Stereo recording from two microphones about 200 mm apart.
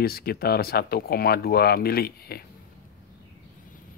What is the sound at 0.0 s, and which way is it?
Speech, 50° left (ahead or behind).